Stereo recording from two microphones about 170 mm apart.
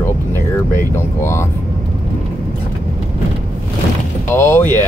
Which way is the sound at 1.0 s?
15° left (ahead or behind).